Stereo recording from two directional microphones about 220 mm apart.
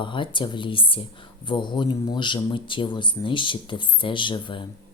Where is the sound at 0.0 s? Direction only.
20° left (ahead or behind).